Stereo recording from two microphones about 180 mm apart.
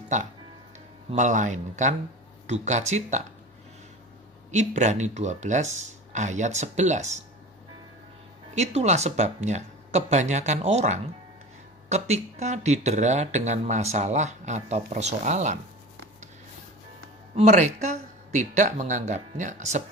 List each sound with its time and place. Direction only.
0.1 s speech: 40° right (ahead or behind)
4.5 s speech: 40° right (ahead or behind)
8.5 s speech: 40° right (ahead or behind)
17.4 s speech: 40° right (ahead or behind)